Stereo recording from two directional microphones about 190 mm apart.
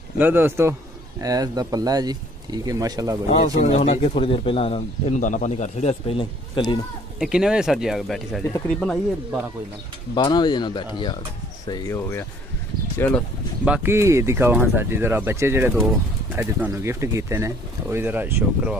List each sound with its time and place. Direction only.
0.2 s speech: 10° right (ahead or behind)
3.3 s speech: 35° left (ahead or behind)
7.2 s speech: 5° right (ahead or behind)
10.1 s speech: 20° left (ahead or behind)
13.7 s speech: 15° right (ahead or behind)
15.7 s speech: centre (ahead or behind)